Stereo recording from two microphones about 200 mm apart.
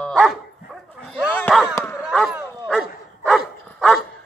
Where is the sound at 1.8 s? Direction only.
10° left (ahead or behind).